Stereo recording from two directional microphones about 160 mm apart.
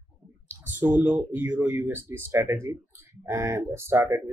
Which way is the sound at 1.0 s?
10° right (ahead or behind).